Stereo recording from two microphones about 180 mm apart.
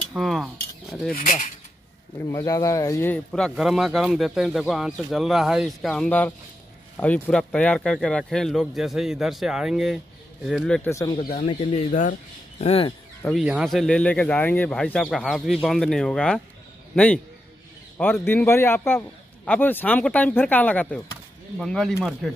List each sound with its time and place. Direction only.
0.1 s cutlery: centre (ahead or behind)
1.1 s speech: 45° left (ahead or behind)
2.1 s a man's voice: 15° left (ahead or behind)
3.3 s speech: centre (ahead or behind)
10.8 s a man's voice: 15° left (ahead or behind)
11.1 s speech: 40° left (ahead or behind)
13.2 s a man's voice: centre (ahead or behind)